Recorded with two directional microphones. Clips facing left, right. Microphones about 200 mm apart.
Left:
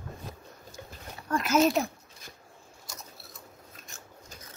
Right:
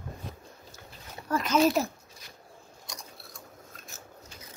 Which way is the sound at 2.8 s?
5° left (ahead or behind).